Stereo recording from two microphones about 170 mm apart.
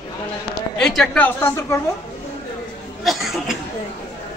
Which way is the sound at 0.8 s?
5° left (ahead or behind).